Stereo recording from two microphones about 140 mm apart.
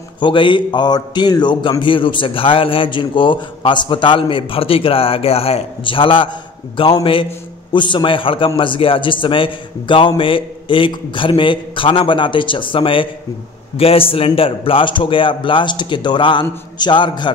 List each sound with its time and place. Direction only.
0.2 s a man's voice: 35° left (ahead or behind)